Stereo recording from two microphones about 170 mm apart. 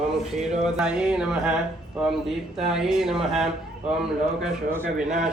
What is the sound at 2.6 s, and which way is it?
Speech, centre (ahead or behind).